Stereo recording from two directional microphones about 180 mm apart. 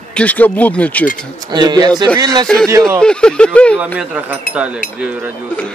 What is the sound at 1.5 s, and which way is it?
Speech, 20° right (ahead or behind).